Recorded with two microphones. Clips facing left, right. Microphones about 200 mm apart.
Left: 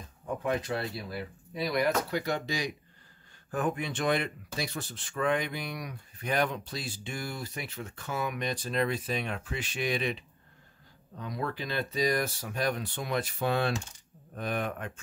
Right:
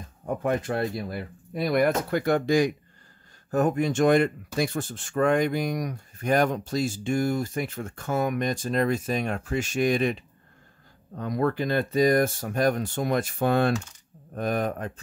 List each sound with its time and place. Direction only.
0.4 s speech: 50° right (ahead or behind)
11.1 s speech: 50° right (ahead or behind)